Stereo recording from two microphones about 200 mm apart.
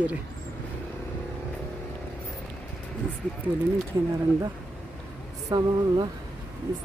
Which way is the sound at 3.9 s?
20° right (ahead or behind).